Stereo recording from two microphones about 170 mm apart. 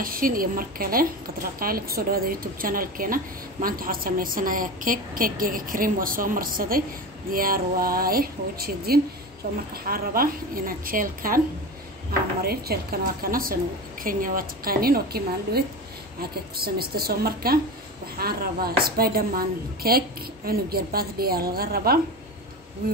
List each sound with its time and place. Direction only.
0.0 s a woman's voice: 55° right (ahead or behind)
12.4 s a woman's voice: 60° right (ahead or behind)